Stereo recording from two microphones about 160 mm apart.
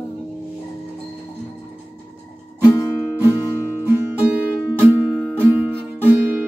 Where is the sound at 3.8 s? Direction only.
10° right (ahead or behind).